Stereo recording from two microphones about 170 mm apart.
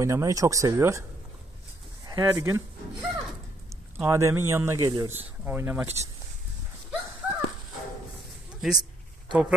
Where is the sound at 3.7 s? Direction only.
15° right (ahead or behind).